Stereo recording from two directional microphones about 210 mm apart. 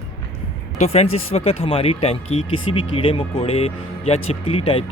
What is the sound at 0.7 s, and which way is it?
Speech, 30° left (ahead or behind).